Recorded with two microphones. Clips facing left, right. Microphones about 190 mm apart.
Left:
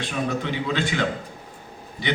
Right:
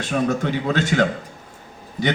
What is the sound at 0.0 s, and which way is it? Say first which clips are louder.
A man's voice: right 5 dB; 45° right (ahead or behind).